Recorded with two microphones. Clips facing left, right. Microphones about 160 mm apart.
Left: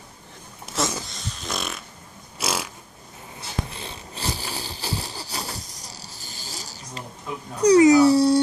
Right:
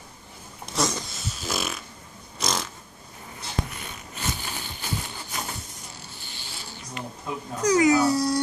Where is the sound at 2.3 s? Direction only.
10° left (ahead or behind).